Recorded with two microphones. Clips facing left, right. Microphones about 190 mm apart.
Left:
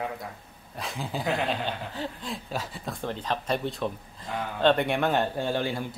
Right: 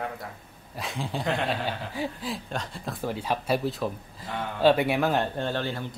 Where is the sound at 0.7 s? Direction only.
Centre (ahead or behind).